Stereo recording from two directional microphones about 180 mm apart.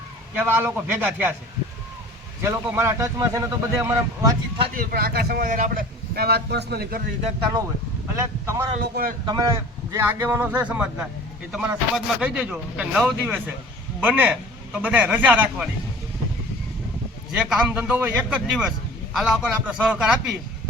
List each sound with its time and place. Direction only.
0.3 s speech: 10° right (ahead or behind)
2.4 s speech: 15° right (ahead or behind)
4.7 s speech: 55° right (ahead or behind)
7.2 s speech: 35° right (ahead or behind)
8.2 s speech: 15° right (ahead or behind)
8.8 s speech: 55° right (ahead or behind)
9.9 s speech: 10° right (ahead or behind)
17.3 s a man's voice: 5° right (ahead or behind)